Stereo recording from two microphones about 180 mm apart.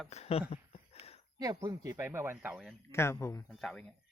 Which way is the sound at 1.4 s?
20° right (ahead or behind).